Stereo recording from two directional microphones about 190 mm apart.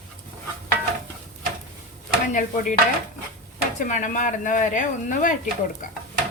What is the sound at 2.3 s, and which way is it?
Speech, 40° left (ahead or behind).